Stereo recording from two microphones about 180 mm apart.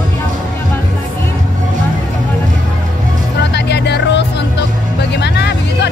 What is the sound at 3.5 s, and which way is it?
Music, 70° left (ahead or behind).